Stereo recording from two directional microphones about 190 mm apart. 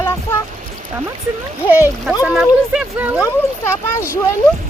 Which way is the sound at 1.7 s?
10° right (ahead or behind).